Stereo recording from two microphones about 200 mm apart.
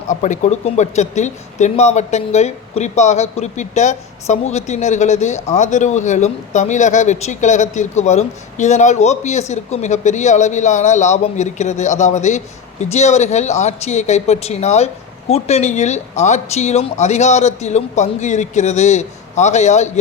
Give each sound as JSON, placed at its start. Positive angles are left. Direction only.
{"t": 0.1, "sound": "speech", "side_deg": 35}